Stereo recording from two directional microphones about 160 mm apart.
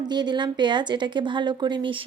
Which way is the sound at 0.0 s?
25° right (ahead or behind).